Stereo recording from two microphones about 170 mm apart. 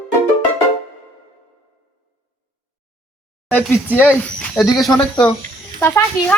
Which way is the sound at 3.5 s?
10° left (ahead or behind).